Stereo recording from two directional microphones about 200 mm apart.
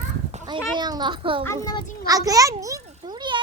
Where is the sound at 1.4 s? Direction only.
15° left (ahead or behind).